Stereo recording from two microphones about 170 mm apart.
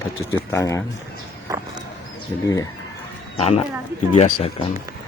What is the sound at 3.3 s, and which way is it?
Speech, 35° left (ahead or behind).